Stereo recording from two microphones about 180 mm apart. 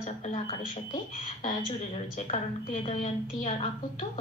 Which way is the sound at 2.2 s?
40° left (ahead or behind).